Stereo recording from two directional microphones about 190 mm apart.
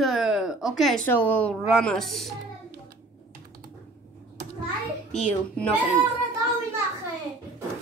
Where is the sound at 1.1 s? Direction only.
10° left (ahead or behind).